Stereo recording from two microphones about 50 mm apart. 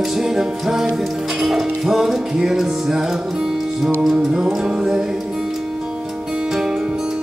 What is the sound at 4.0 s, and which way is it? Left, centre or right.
Music, centre.